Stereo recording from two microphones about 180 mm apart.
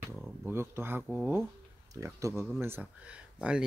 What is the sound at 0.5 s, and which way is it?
Speech, 10° right (ahead or behind).